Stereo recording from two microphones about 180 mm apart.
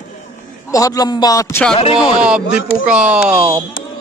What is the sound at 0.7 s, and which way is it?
Speech, 20° left (ahead or behind).